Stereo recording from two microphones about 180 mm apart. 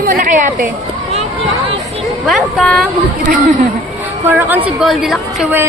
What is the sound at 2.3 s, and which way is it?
Speech, centre (ahead or behind).